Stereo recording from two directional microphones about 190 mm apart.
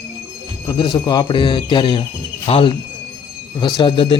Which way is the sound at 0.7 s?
25° left (ahead or behind).